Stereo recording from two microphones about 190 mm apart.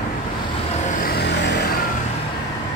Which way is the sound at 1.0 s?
55° left (ahead or behind).